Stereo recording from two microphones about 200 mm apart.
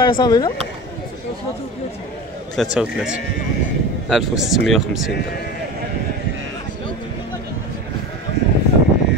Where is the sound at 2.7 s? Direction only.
5° right (ahead or behind).